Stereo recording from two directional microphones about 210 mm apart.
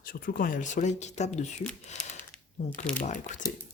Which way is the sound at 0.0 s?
40° left (ahead or behind).